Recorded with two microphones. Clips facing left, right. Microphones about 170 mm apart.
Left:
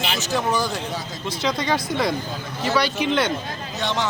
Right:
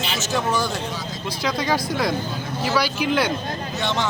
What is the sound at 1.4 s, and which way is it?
Speech, 5° right (ahead or behind).